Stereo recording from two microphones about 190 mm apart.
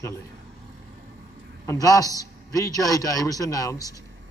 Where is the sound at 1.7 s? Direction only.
20° left (ahead or behind).